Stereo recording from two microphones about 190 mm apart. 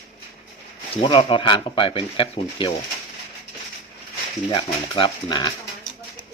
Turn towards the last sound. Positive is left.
turn(degrees=25)  # may be behind; listen again after turning